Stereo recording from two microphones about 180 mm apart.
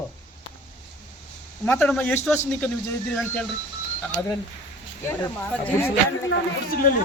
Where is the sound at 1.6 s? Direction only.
5° left (ahead or behind).